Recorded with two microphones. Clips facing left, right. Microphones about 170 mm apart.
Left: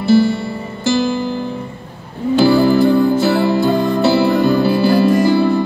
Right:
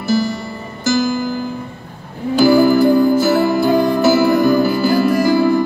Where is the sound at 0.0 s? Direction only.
30° left (ahead or behind).